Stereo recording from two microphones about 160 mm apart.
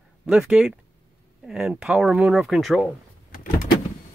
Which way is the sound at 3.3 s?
60° left (ahead or behind).